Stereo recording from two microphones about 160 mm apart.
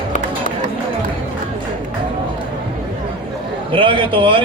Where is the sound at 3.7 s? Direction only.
30° right (ahead or behind).